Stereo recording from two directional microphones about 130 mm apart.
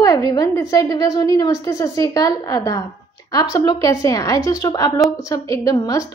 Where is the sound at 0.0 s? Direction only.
30° left (ahead or behind).